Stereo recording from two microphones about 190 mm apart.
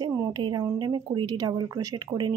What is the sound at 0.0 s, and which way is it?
A woman's voice, 20° right (ahead or behind).